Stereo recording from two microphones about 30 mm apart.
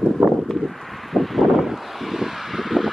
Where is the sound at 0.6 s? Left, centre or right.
Centre.